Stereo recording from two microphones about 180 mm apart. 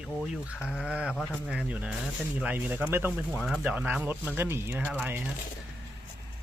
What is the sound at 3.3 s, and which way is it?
Speech, 5° left (ahead or behind).